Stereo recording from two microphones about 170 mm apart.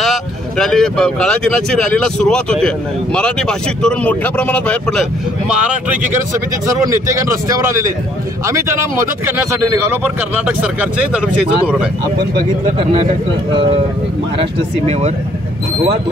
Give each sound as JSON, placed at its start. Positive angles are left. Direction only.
{"t": 0.0, "sound": "speech", "side_deg": 0}
{"t": 5.6, "sound": "speech", "side_deg": -5}
{"t": 6.8, "sound": "speech", "side_deg": -20}
{"t": 12.2, "sound": "speech", "side_deg": -25}
{"t": 14.4, "sound": "speech", "side_deg": -40}